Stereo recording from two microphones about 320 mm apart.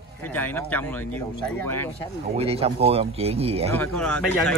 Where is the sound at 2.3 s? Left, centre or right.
Centre.